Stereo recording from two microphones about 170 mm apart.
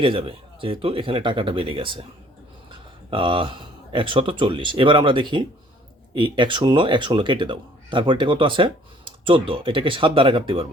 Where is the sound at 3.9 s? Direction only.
30° right (ahead or behind).